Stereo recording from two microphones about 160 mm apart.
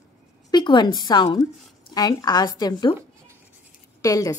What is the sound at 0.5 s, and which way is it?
Speech, 25° left (ahead or behind).